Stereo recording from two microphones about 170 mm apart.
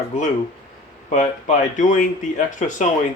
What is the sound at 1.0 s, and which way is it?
Speech, 45° left (ahead or behind).